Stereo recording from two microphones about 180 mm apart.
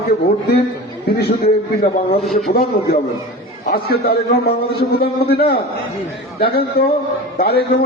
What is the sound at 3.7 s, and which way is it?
A man's voice, 60° left (ahead or behind).